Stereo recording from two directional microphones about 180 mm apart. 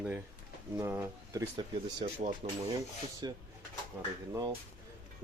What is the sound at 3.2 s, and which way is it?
Speech, 25° right (ahead or behind).